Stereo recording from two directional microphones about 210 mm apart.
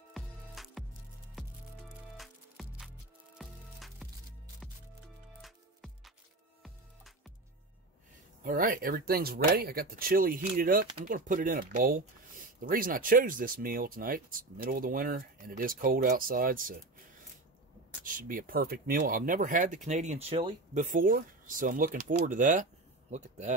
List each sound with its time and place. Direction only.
0.1 s music: centre (ahead or behind)
2.1 s music: centre (ahead or behind)
5.4 s music: centre (ahead or behind)
8.5 s speech: 40° right (ahead or behind)
18.0 s speech: 40° right (ahead or behind)